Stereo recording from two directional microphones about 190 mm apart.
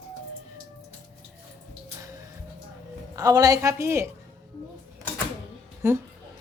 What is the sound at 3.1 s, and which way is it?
Speech, 20° right (ahead or behind).